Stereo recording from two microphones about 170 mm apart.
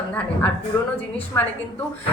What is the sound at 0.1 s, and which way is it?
Speech, 10° left (ahead or behind).